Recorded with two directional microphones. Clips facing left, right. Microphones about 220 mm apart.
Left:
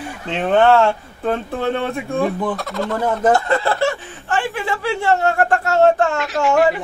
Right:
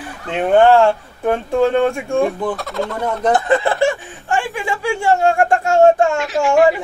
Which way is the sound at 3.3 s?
20° right (ahead or behind).